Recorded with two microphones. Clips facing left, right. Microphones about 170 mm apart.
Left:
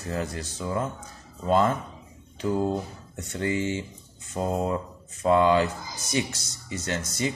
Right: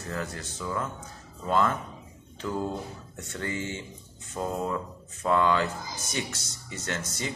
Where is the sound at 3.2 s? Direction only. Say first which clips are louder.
Left 6 dB; 15° left (ahead or behind).